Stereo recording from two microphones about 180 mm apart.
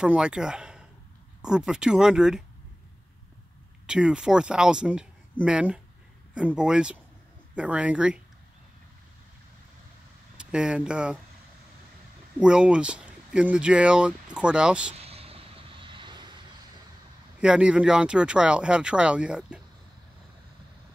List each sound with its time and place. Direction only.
0.0 s speech: 5° right (ahead or behind)
3.8 s speech: 5° right (ahead or behind)
10.3 s speech: 5° right (ahead or behind)
12.4 s speech: 5° right (ahead or behind)
15.0 s vehicle: 35° right (ahead or behind)
17.4 s speech: 5° right (ahead or behind)